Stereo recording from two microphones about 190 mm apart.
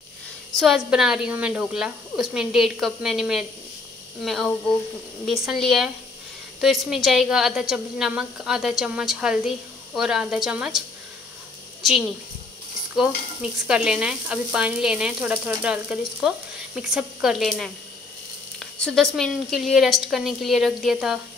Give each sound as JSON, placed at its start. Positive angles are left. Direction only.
{"t": 0.6, "sound": "sizzle", "side_deg": 0}
{"t": 12.9, "sound": "sizzle", "side_deg": -5}